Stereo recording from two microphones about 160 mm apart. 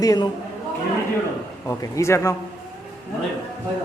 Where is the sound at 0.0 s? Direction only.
25° left (ahead or behind).